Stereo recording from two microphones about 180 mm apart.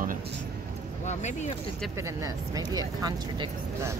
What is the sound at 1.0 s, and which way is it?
Speech, 40° left (ahead or behind).